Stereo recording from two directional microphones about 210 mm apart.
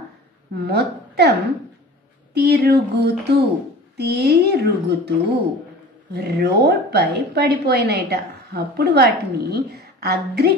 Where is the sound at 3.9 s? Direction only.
50° right (ahead or behind).